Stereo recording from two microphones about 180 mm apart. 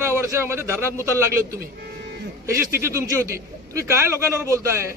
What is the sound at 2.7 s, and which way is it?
A man's voice, 15° right (ahead or behind).